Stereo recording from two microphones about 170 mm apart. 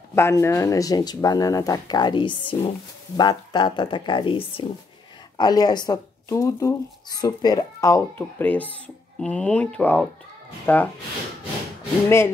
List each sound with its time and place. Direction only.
0.1 s speech: 15° left (ahead or behind)